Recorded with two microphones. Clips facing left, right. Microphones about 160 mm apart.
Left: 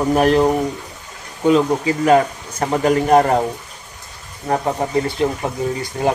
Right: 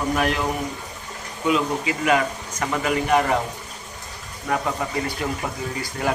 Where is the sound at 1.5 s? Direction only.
35° left (ahead or behind).